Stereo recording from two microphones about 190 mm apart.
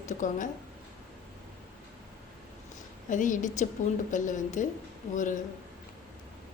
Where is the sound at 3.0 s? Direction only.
40° left (ahead or behind).